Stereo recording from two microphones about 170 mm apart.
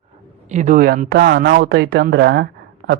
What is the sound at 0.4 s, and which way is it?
Speech, 45° right (ahead or behind).